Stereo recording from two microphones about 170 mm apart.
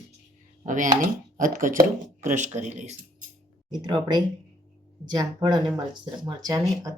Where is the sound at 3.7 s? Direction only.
25° right (ahead or behind).